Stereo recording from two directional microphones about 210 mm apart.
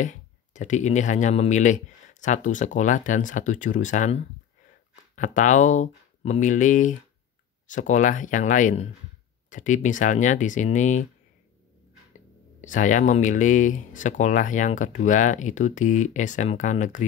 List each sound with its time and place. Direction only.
0.0 s speech: 35° left (ahead or behind)
12.6 s speech: 35° left (ahead or behind)